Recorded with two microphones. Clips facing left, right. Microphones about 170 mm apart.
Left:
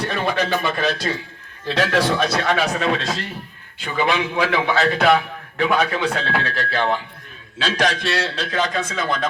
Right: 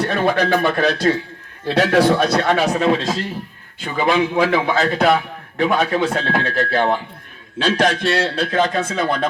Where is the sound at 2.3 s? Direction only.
40° right (ahead or behind).